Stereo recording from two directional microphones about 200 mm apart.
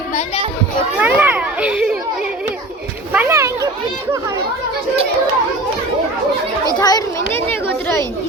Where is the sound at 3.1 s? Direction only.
15° right (ahead or behind).